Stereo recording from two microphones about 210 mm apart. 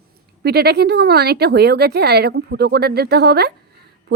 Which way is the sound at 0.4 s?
50° right (ahead or behind).